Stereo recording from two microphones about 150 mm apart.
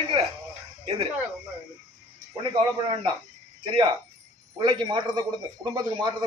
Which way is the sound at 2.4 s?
35° right (ahead or behind).